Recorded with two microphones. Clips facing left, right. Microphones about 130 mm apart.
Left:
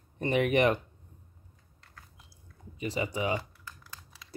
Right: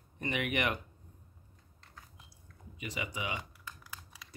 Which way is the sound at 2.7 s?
35° left (ahead or behind).